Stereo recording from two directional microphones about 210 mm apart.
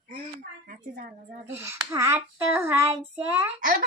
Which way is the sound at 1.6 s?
10° right (ahead or behind).